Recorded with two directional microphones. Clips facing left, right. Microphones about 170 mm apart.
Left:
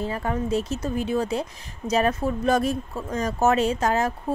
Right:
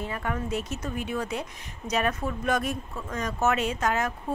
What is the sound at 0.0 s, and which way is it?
Speech, 30° left (ahead or behind).